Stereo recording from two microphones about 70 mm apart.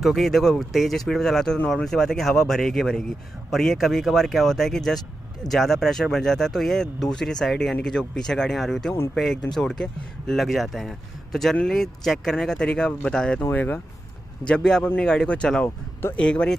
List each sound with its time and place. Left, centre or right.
0.0 s speech: centre
13.4 s speech: left
14.4 s speech: centre
15.6 s speech: left
16.2 s speech: centre